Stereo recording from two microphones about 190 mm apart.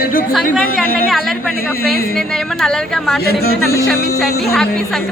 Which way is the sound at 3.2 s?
55° left (ahead or behind).